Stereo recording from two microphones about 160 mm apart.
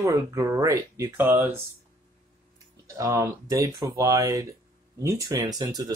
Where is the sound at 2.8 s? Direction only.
20° right (ahead or behind).